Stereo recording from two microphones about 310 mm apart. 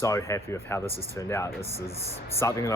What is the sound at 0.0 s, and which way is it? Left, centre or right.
Speech, centre.